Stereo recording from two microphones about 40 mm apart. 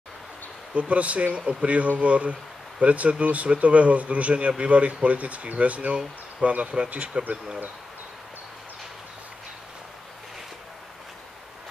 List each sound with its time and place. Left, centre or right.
0.7 s speech: right